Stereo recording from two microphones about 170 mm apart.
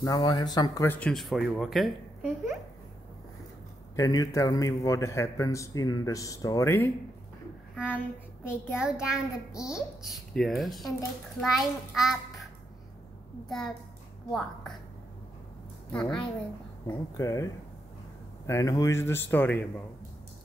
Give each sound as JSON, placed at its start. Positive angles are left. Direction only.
{"t": 0.0, "sound": "a man's voice", "side_deg": 25}
{"t": 0.8, "sound": "a child's voice", "side_deg": 10}
{"t": 3.9, "sound": "a man's voice", "side_deg": 20}
{"t": 7.7, "sound": "a child's voice", "side_deg": -5}
{"t": 13.5, "sound": "a child's voice", "side_deg": 5}
{"t": 15.9, "sound": "a child's voice", "side_deg": 5}
{"t": 16.8, "sound": "a man's voice", "side_deg": 20}
{"t": 18.5, "sound": "speech", "side_deg": 20}